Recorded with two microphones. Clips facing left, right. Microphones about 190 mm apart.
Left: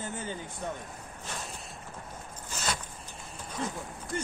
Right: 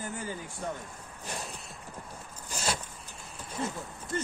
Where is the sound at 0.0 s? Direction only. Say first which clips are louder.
Even; 25° left (ahead or behind).